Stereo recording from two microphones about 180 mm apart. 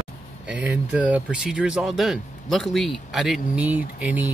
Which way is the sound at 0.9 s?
5° right (ahead or behind).